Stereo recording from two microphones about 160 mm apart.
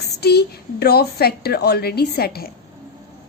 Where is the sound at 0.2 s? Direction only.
90° left; by 2.5 s 75° left (ahead or behind).